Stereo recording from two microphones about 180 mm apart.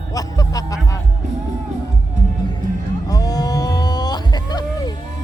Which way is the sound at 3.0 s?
20° left (ahead or behind).